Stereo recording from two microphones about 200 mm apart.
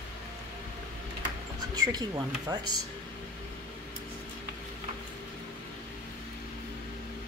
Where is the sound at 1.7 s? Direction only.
20° right (ahead or behind).